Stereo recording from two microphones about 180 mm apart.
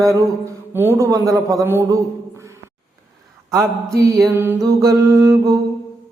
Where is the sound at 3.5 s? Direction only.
15° right (ahead or behind).